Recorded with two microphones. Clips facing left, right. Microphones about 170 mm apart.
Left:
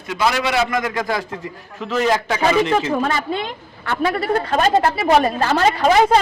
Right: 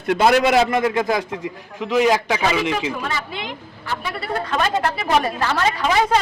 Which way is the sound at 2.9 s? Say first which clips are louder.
Left 7 dB; 50° left (ahead or behind).